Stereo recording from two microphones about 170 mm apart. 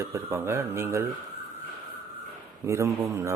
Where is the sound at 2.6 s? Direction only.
15° right (ahead or behind).